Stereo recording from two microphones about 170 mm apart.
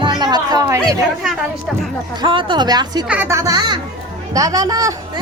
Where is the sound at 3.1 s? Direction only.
15° right (ahead or behind).